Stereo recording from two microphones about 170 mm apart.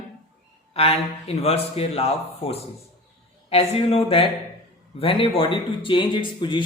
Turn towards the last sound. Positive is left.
turn(degrees=30)  # may be behind; listen again after turning